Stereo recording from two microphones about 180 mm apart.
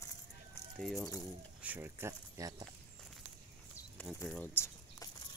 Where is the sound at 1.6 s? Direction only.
10° right (ahead or behind).